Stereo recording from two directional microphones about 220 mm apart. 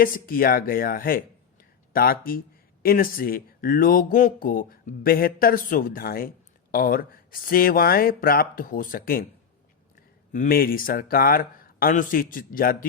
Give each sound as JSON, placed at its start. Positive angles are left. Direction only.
{"t": 0.0, "sound": "speech", "side_deg": 40}
{"t": 10.3, "sound": "speech", "side_deg": 40}